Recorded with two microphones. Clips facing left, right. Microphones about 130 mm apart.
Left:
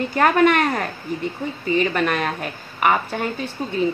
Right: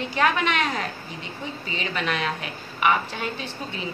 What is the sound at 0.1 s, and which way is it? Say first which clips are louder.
A woman's voice: left 7 dB; 50° left (ahead or behind).